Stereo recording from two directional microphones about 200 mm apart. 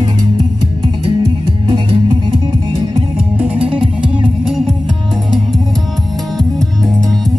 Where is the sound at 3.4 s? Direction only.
5° right (ahead or behind).